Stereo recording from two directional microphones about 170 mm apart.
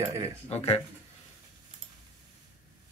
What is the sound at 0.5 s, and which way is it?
Speech, 40° left (ahead or behind).